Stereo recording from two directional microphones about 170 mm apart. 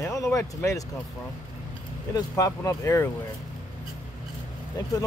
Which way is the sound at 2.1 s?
20° left (ahead or behind).